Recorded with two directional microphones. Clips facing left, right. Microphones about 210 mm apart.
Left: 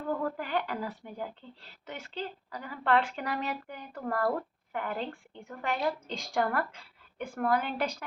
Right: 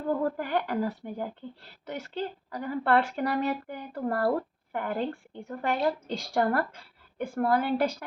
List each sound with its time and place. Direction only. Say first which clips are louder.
0.1 s a woman's voice: right 4 dB; 40° right (ahead or behind)
3.9 s a woman's voice: right 3 dB; 35° right (ahead or behind)
4.7 s a woman's voice: right 4 dB; 45° right (ahead or behind)